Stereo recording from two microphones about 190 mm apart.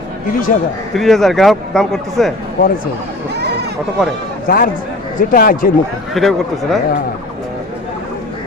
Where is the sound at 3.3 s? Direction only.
60° right (ahead or behind).